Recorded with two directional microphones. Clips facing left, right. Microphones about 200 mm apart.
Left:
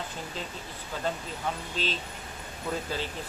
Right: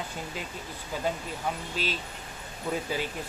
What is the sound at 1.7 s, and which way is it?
Speech, 10° right (ahead or behind).